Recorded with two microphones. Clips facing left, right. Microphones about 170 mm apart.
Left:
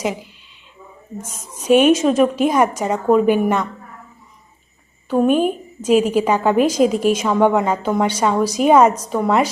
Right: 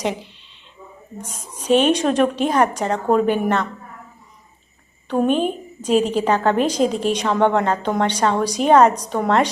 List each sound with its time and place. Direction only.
0.0 s a woman's voice: 5° left (ahead or behind)
1.5 s a woman's voice: 10° left (ahead or behind)
5.0 s a woman's voice: 5° left (ahead or behind)